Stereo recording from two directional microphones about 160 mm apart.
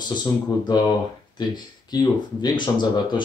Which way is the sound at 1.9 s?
25° left (ahead or behind).